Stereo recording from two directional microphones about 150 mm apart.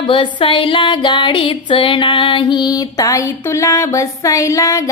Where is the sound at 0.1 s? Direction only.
35° left (ahead or behind).